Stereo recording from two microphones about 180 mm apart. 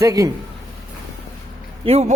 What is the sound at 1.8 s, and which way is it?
Speech, 35° right (ahead or behind).